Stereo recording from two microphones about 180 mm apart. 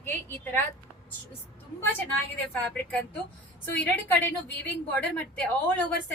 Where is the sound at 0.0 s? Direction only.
10° left (ahead or behind).